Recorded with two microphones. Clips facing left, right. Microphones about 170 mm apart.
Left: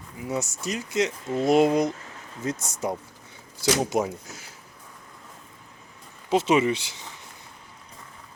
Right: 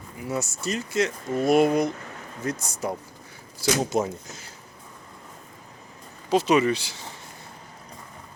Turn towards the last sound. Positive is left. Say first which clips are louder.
# right 1 dB
turn(degrees=20)  # may be behind; listen again after turning